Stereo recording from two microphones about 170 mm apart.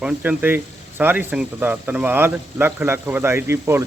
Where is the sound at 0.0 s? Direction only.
10° right (ahead or behind).